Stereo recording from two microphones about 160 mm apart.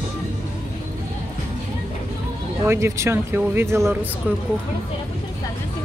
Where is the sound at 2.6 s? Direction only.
15° right (ahead or behind).